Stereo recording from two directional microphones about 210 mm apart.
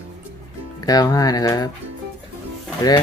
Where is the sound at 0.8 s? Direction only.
20° left (ahead or behind).